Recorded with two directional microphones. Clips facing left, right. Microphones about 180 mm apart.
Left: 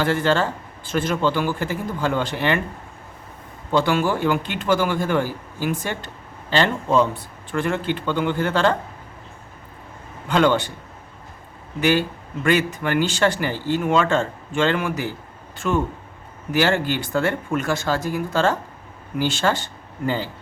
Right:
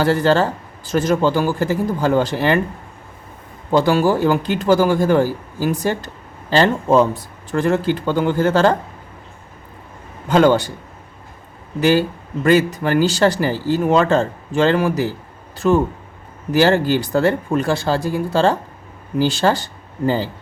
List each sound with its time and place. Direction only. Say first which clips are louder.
0.0 s speech: right 5 dB; 40° right (ahead or behind)
3.7 s speech: right 5 dB; 40° right (ahead or behind)
10.2 s speech: right 5 dB; 40° right (ahead or behind)
11.8 s speech: right 4 dB; 35° right (ahead or behind)